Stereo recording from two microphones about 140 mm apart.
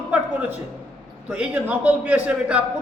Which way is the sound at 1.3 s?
10° right (ahead or behind).